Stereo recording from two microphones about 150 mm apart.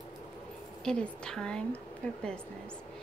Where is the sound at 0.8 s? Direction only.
5° left (ahead or behind).